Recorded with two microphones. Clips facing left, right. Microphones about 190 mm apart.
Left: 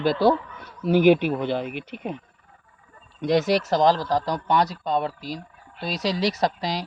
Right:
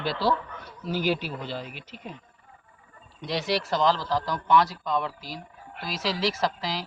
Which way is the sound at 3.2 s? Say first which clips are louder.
Left 7 dB; 50° left (ahead or behind).